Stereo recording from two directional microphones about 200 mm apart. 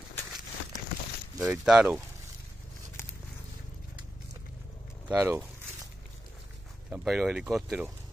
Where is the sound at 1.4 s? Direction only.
5° right (ahead or behind).